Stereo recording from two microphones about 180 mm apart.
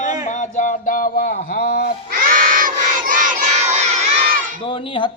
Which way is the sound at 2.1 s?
50° right (ahead or behind).